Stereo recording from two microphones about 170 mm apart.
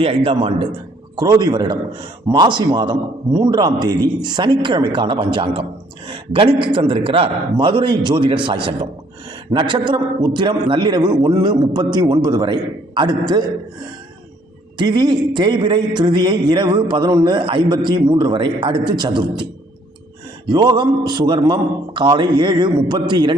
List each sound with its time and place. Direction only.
0.0 s a man's voice: 35° right (ahead or behind)
14.8 s a man's voice: 25° right (ahead or behind)
20.5 s a man's voice: 25° right (ahead or behind)